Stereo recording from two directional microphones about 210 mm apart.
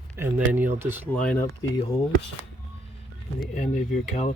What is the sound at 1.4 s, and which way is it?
Speech, 15° left (ahead or behind).